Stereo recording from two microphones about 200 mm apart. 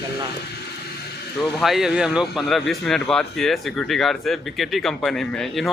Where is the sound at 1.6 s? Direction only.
Centre (ahead or behind).